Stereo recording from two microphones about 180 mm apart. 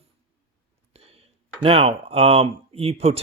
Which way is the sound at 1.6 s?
35° right (ahead or behind).